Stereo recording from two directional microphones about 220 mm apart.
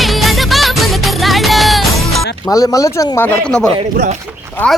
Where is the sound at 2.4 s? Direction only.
15° left (ahead or behind).